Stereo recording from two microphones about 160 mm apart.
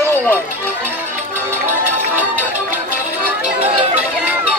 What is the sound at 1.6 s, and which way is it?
Music, 15° right (ahead or behind).